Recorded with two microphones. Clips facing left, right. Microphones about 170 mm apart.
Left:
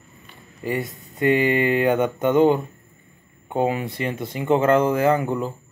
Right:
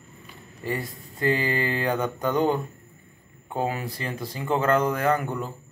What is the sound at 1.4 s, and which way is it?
Speech, 20° left (ahead or behind).